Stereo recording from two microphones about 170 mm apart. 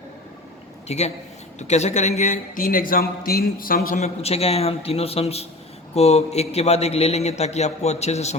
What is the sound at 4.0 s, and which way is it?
A man's voice, 35° left (ahead or behind).